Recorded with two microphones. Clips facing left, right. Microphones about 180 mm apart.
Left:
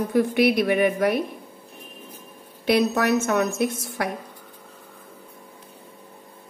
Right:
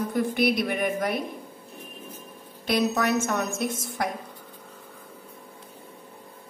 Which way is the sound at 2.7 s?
65° left (ahead or behind).